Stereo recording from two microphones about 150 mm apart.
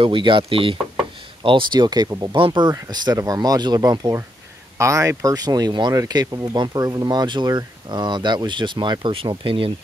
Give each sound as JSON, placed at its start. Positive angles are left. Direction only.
{"t": 0.0, "sound": "speech", "side_deg": -35}